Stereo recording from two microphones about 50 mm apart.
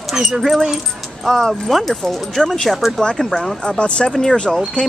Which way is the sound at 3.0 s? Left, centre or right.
Centre.